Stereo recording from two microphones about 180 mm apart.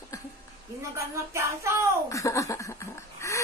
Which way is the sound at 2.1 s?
15° left (ahead or behind).